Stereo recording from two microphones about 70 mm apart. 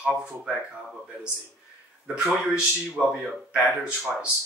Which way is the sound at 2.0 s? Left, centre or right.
Centre.